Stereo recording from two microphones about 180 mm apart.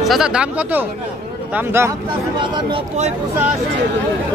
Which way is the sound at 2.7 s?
40° right (ahead or behind).